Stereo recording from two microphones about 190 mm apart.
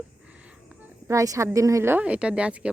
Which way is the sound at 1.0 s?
15° right (ahead or behind).